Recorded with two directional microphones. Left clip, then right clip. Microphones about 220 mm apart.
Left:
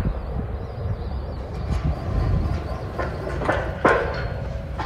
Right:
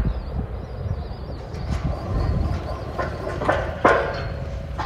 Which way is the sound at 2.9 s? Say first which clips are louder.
Right 1 dB; centre (ahead or behind).